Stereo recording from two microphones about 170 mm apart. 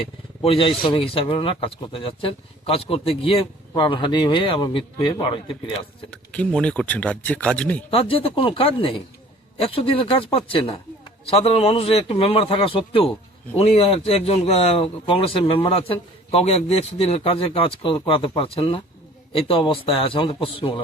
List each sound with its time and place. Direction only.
0.4 s a man's voice: 35° left (ahead or behind)
6.1 s speech: 5° left (ahead or behind)
7.9 s a man's voice: 35° left (ahead or behind)